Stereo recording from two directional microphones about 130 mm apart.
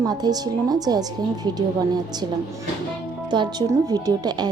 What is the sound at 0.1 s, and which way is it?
Speech, 30° right (ahead or behind).